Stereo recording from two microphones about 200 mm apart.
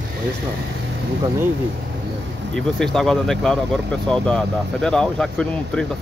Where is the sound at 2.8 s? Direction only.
Centre (ahead or behind).